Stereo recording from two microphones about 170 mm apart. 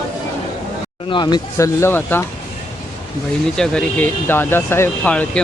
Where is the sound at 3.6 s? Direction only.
5° left (ahead or behind).